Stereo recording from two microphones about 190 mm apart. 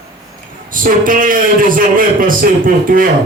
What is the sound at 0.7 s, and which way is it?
A man's voice, 45° right (ahead or behind).